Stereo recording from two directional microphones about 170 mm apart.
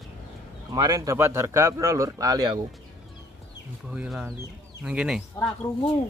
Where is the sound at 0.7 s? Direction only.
25° right (ahead or behind).